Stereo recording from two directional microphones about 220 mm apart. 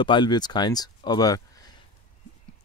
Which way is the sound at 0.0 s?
20° left (ahead or behind).